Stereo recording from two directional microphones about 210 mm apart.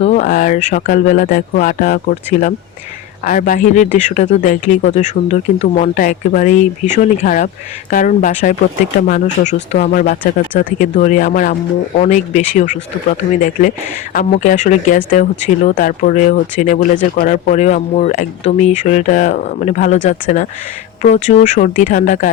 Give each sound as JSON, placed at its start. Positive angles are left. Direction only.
{"t": 0.0, "sound": "speech", "side_deg": 35}